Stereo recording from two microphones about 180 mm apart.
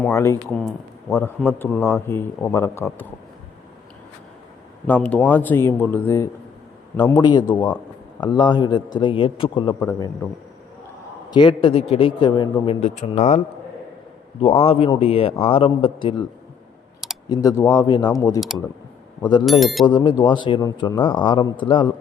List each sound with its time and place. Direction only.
0.1 s a man's voice: 15° left (ahead or behind)
4.9 s a man's voice: 5° left (ahead or behind); by 10.1 s 25° left (ahead or behind)
11.3 s a man's voice: 25° left (ahead or behind)
12.8 s speech: 40° left (ahead or behind)
14.4 s a man's voice: 30° left (ahead or behind)
17.2 s a man's voice: 20° left (ahead or behind)
19.5 s speech: centre (ahead or behind)
19.8 s a man's voice: 25° left (ahead or behind)